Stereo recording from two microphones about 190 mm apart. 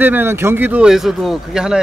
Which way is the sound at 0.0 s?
10° right (ahead or behind).